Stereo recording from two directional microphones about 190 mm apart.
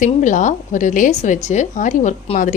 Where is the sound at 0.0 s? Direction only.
40° left (ahead or behind).